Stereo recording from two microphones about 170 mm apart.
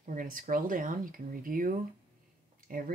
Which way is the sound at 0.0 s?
55° right (ahead or behind).